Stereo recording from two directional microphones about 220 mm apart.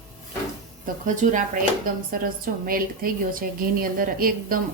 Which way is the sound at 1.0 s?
35° right (ahead or behind).